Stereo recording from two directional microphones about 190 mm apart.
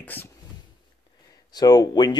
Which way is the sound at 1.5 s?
20° left (ahead or behind).